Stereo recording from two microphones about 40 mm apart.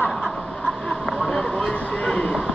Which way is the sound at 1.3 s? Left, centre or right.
Centre.